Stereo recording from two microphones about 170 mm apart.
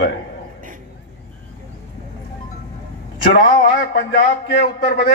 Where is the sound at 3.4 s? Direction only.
55° left (ahead or behind).